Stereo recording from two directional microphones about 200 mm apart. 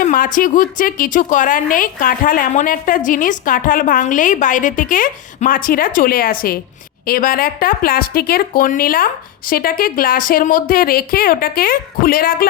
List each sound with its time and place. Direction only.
0.0 s a woman's voice: 45° left (ahead or behind)